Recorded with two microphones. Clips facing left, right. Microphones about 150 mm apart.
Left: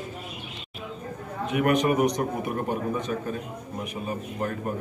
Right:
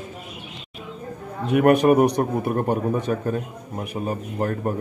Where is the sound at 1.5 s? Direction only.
60° right (ahead or behind); by 4.7 s 40° right (ahead or behind).